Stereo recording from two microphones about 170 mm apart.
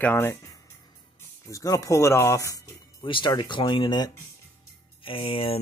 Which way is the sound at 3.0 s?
30° left (ahead or behind).